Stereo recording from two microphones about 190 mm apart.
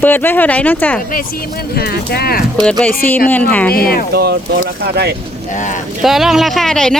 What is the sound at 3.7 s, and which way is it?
Speech, 50° left (ahead or behind).